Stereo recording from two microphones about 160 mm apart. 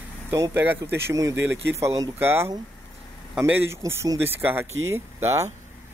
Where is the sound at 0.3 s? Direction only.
15° right (ahead or behind).